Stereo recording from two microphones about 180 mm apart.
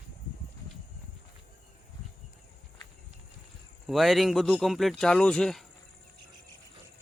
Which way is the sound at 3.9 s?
Centre (ahead or behind).